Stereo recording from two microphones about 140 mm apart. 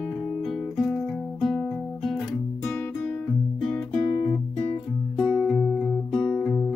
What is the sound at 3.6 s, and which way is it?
Music, centre (ahead or behind).